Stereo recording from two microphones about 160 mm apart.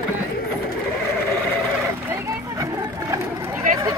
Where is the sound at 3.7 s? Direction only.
55° right (ahead or behind).